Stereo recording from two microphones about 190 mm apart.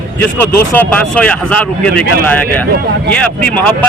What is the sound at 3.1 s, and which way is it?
Speech, 10° left (ahead or behind).